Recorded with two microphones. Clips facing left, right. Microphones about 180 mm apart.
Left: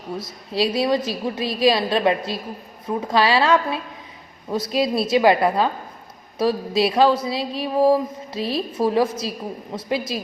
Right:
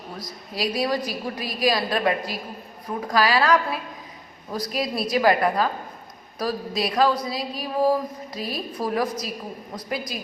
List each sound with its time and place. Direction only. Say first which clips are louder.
0.2 s speech: left 6 dB; 25° left (ahead or behind)